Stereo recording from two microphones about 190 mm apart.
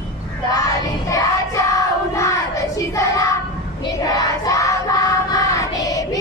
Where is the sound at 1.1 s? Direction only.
15° left (ahead or behind).